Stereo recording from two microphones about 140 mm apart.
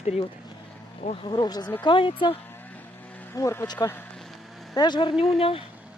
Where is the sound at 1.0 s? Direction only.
40° left (ahead or behind).